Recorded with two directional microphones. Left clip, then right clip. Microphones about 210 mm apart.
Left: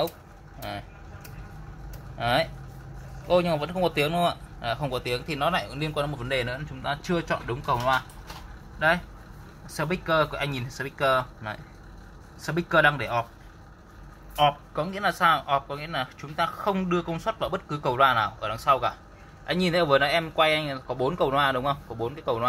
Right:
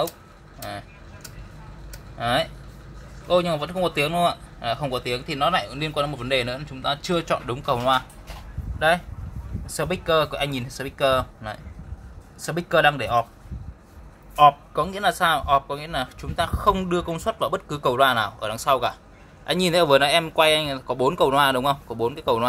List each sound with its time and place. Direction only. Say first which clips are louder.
0.6 s vehicle: right 2 dB; 5° right (ahead or behind)
2.1 s speech: right 2 dB; 10° right (ahead or behind)
14.3 s speech: right 7 dB; 15° right (ahead or behind)